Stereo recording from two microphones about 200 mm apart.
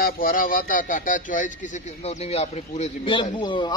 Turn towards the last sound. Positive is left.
turn(degrees=25)  # may be behind; listen again after turning